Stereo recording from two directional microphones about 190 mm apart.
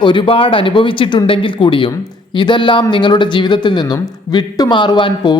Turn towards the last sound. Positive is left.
turn(degrees=25)  # may be behind; listen again after turning